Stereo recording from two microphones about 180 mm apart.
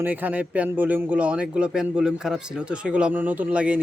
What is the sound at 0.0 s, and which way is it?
Speech, 10° right (ahead or behind).